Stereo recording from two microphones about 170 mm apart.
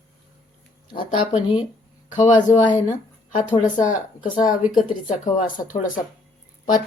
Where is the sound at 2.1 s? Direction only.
45° left (ahead or behind).